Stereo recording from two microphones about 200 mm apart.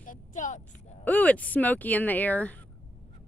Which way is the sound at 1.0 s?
10° left (ahead or behind).